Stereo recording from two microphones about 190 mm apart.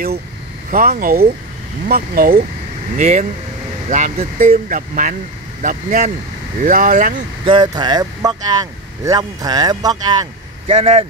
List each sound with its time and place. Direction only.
0.7 s speech: 50° right (ahead or behind)
7.4 s speech: 25° right (ahead or behind)